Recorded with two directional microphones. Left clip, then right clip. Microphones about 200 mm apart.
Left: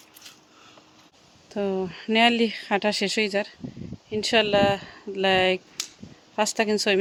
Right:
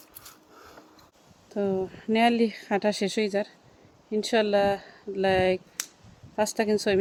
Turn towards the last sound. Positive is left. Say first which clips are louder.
# left 2 dB
turn(degrees=5)  # may be behind; listen again after turning